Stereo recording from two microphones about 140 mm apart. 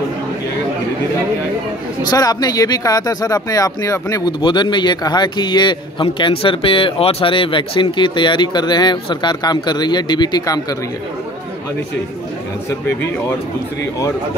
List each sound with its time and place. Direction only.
2.0 s speech: 25° left (ahead or behind)
4.4 s a man's voice: 35° left (ahead or behind)